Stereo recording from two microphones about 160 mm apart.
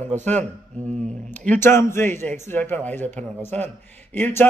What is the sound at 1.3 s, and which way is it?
A man's voice, 10° left (ahead or behind).